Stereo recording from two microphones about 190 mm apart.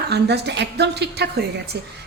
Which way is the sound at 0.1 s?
60° right (ahead or behind).